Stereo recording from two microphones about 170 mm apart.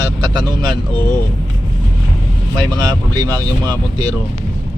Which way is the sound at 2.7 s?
20° right (ahead or behind).